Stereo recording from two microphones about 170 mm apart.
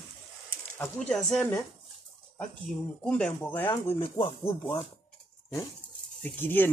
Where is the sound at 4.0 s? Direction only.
30° left (ahead or behind).